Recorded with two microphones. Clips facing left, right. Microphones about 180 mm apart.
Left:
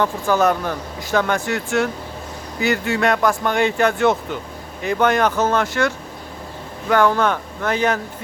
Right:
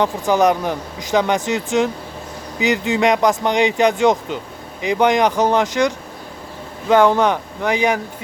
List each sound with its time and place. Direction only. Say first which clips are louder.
0.0 s speech: right 2 dB; 15° right (ahead or behind)